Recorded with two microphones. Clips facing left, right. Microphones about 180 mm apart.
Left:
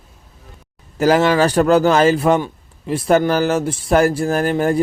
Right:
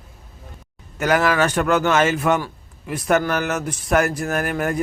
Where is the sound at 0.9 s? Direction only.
30° left (ahead or behind).